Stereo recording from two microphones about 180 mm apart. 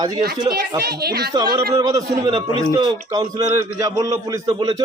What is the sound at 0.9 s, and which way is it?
Speech, 60° right (ahead or behind).